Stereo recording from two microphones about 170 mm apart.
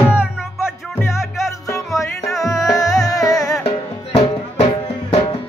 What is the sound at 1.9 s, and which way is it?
Music, 20° left (ahead or behind).